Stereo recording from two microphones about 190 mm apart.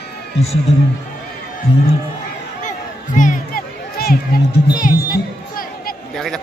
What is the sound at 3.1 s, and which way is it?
Music, 45° left (ahead or behind).